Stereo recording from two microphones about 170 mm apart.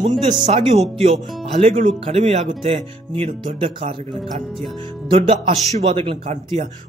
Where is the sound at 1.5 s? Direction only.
40° right (ahead or behind).